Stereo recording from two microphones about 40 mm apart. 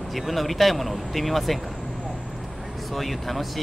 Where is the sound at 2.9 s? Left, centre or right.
Centre.